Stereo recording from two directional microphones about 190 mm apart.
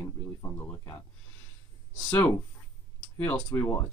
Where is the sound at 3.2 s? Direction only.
10° left (ahead or behind).